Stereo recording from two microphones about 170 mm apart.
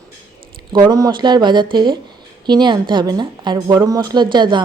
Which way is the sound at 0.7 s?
25° right (ahead or behind).